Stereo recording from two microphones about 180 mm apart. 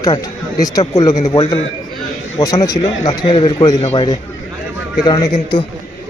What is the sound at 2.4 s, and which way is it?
A man's voice, 20° left (ahead or behind).